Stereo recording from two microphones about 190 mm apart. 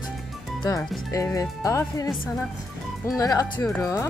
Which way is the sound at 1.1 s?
15° left (ahead or behind).